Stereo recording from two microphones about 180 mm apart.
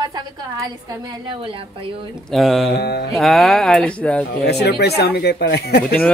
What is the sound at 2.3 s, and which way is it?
Speech, centre (ahead or behind).